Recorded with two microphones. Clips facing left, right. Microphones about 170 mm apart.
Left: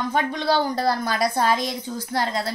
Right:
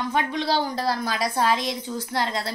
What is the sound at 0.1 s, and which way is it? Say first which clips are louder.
A woman's voice: left 2 dB; 45° left (ahead or behind).